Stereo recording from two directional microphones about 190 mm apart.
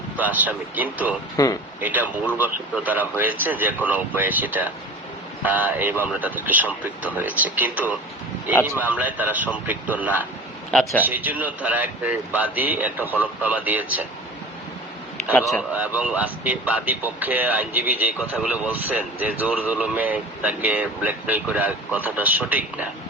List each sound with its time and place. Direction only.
0.2 s speech: 10° right (ahead or behind)
1.4 s a man's voice: 15° left (ahead or behind)
1.8 s speech: 10° right (ahead or behind)
10.7 s a man's voice: 5° left (ahead or behind)
11.0 s speech: 10° right (ahead or behind)
15.3 s a man's voice: 5° left (ahead or behind)
15.7 s speech: 10° right (ahead or behind)